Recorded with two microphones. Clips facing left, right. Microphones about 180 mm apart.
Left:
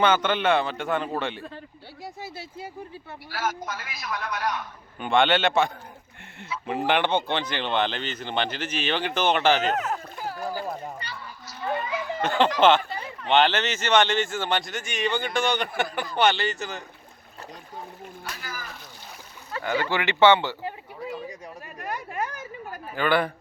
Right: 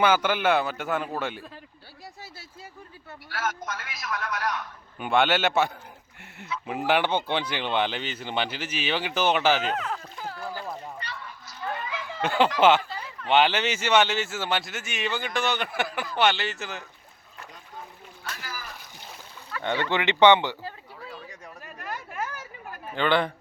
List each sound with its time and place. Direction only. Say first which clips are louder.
0.0 s speech: even; 10° right (ahead or behind)
2.0 s speech: left 8 dB; 20° left (ahead or behind)
3.2 s speech: left 1 dB; centre (ahead or behind)
10.2 s a sound: left 4 dB; 10° left (ahead or behind)
13.2 s speech: left 1 dB; 10° right (ahead or behind)
18.3 s speech: right 1 dB; centre (ahead or behind)
19.6 s speech: even; 25° right (ahead or behind)
20.6 s a sound: left 5 dB; 15° left (ahead or behind)
23.0 s speech: even; 20° right (ahead or behind)